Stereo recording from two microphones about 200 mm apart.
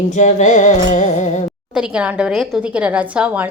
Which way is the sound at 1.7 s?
5° right (ahead or behind).